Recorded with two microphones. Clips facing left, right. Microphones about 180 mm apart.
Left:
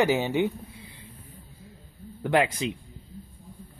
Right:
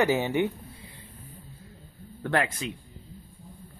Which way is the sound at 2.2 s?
15° left (ahead or behind).